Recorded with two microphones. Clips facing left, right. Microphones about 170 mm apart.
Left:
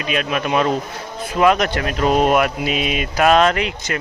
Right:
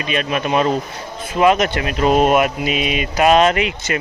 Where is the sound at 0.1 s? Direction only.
Centre (ahead or behind).